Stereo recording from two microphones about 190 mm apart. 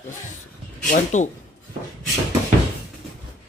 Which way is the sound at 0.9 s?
40° left (ahead or behind).